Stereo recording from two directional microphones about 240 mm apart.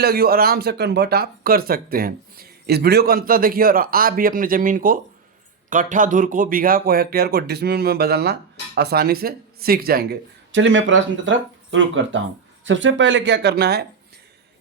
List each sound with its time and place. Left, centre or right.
0.0 s speech: right